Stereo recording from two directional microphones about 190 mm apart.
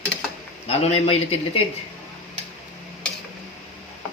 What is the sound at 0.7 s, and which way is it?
Speech, 35° left (ahead or behind).